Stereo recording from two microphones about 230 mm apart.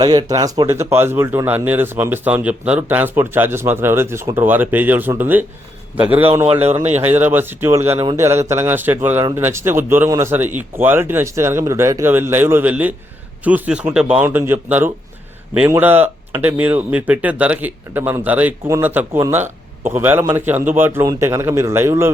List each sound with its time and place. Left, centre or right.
0.0 s speech: centre
6.4 s speech: right
7.0 s speech: centre